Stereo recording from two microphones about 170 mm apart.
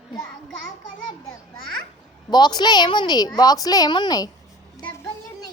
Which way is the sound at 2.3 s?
25° left (ahead or behind).